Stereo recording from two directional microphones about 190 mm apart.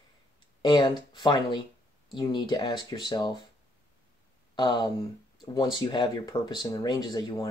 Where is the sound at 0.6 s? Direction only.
25° left (ahead or behind).